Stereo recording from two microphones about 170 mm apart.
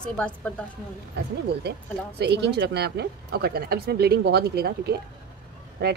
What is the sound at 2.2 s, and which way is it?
Speech, 80° right.